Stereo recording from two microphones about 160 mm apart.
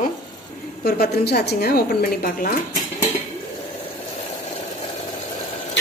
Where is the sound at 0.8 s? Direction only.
80° left; by 2.5 s 60° left (ahead or behind).